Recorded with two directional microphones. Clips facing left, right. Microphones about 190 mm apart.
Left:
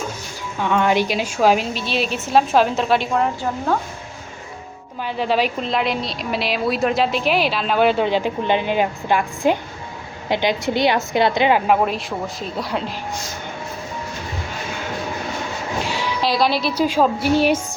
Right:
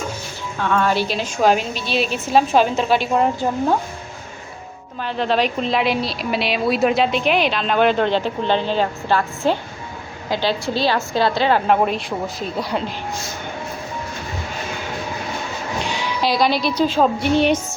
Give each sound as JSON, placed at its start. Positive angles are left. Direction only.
{"t": 0.6, "sound": "a woman's voice", "side_deg": 15}
{"t": 5.0, "sound": "a woman's voice", "side_deg": 10}
{"t": 11.8, "sound": "a woman's voice", "side_deg": 0}
{"t": 15.8, "sound": "a woman's voice", "side_deg": 0}